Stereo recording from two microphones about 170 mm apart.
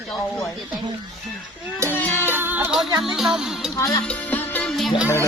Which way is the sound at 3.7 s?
20° left (ahead or behind).